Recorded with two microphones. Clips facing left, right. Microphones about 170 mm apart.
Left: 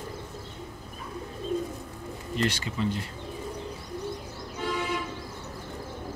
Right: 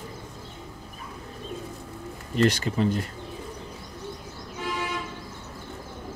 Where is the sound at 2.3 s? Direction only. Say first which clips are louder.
Right 6 dB; 45° right (ahead or behind).